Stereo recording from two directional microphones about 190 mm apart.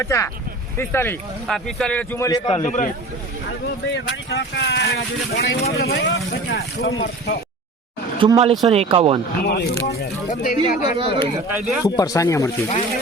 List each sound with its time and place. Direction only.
0.0 s a man's voice: 15° left (ahead or behind)
1.5 s a man's voice: centre (ahead or behind); by 2.6 s 20° left (ahead or behind)
2.6 s speech: 40° left (ahead or behind)
3.9 s speech: 65° left (ahead or behind); by 7.3 s 50° left (ahead or behind)
8.2 s speech: 20° right (ahead or behind)
9.4 s speech: 55° left (ahead or behind); by 10.9 s 40° left (ahead or behind)
10.9 s speech: 30° right (ahead or behind)
11.6 s speech: 5° right (ahead or behind)
11.9 s a man's voice: 20° left (ahead or behind)